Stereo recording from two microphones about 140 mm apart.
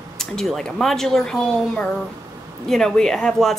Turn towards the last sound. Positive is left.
turn(degrees=5)  # may be behind; listen again after turning